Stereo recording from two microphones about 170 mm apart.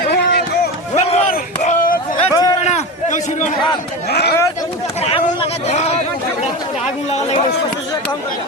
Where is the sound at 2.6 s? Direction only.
45° left (ahead or behind).